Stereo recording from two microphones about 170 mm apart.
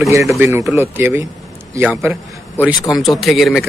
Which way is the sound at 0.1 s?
15° right (ahead or behind).